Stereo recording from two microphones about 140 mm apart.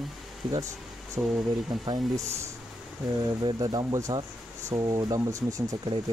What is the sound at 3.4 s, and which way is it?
Speech, 35° right (ahead or behind).